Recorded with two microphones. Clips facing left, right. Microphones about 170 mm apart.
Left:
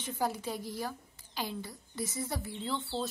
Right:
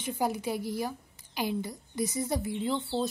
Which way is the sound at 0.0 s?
15° right (ahead or behind).